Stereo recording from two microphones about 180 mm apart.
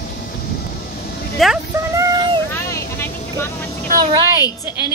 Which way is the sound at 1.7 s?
15° right (ahead or behind).